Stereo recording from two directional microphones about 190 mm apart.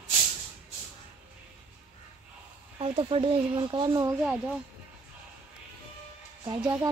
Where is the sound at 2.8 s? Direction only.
30° right (ahead or behind).